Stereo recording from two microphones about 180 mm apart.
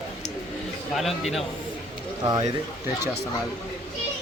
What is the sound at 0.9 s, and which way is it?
Speech, centre (ahead or behind).